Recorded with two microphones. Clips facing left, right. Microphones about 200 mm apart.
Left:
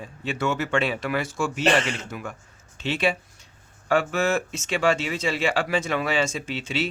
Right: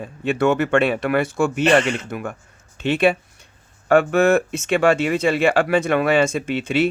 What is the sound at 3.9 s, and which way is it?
Speech, 55° right (ahead or behind).